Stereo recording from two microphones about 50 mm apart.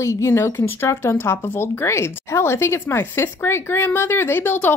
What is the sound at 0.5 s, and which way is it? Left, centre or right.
A woman's voice, left.